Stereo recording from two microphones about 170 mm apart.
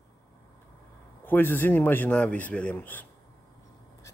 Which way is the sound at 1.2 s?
10° left (ahead or behind).